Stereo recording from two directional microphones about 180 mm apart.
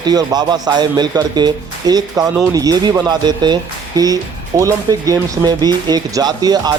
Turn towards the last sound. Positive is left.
turn(degrees=-20)  # may be behind; listen again after turning